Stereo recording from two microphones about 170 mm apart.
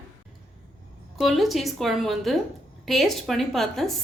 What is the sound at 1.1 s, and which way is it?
A woman's voice, centre (ahead or behind).